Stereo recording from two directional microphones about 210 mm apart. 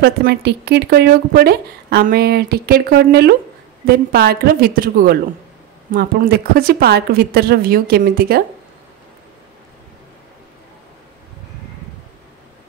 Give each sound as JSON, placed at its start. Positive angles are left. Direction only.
{"t": 0.0, "sound": "a woman's voice", "side_deg": -50}